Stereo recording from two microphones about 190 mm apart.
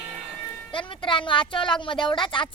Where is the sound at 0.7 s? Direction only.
25° left (ahead or behind).